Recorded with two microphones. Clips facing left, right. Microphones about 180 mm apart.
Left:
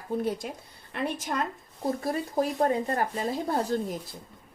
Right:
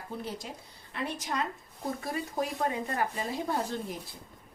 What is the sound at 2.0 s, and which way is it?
Speech, 40° left (ahead or behind).